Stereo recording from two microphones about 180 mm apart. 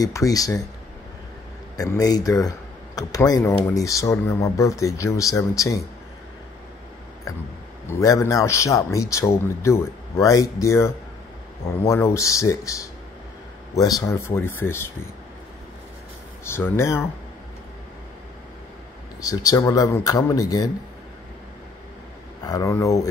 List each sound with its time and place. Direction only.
0.0 s speech: 20° left (ahead or behind)
1.8 s speech: 20° left (ahead or behind)
7.9 s speech: 15° left (ahead or behind)
16.4 s speech: 15° left (ahead or behind)
19.2 s speech: 20° left (ahead or behind)
22.4 s speech: 20° left (ahead or behind)